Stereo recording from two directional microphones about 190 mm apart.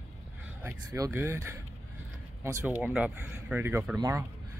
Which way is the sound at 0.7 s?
15° right (ahead or behind).